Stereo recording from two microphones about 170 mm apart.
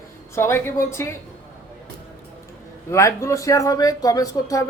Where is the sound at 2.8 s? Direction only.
15° left (ahead or behind).